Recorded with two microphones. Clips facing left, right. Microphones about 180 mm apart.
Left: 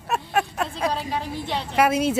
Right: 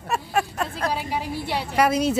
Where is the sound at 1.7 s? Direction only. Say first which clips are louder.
Even; 5° left (ahead or behind).